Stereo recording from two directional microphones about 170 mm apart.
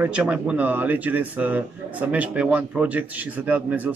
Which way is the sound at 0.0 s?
10° right (ahead or behind).